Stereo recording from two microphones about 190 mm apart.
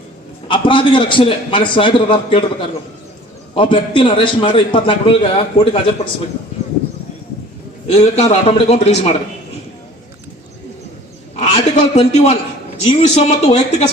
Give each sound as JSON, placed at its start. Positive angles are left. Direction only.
{"t": 0.4, "sound": "a man's voice", "side_deg": 25}
{"t": 7.9, "sound": "a man's voice", "side_deg": 35}
{"t": 11.3, "sound": "a man's voice", "side_deg": 35}